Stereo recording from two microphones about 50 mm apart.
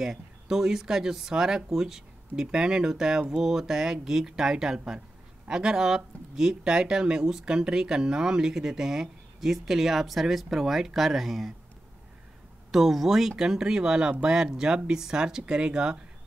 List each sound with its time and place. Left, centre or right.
0.0 s speech: centre
12.7 s speech: centre